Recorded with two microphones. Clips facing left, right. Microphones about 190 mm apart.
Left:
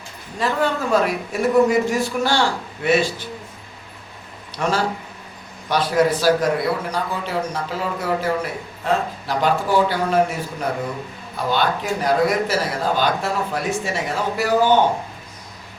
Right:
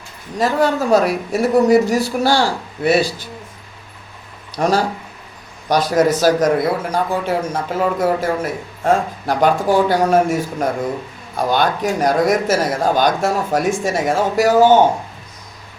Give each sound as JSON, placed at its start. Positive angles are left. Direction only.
{"t": 0.3, "sound": "speech", "side_deg": -40}
{"t": 4.5, "sound": "speech", "side_deg": -40}